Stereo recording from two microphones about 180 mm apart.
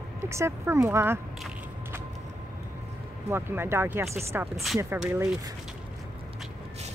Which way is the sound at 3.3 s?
15° right (ahead or behind).